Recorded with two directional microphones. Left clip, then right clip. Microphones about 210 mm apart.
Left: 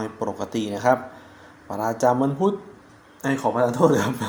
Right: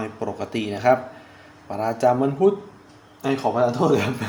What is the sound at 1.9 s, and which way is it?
Speech, 20° left (ahead or behind).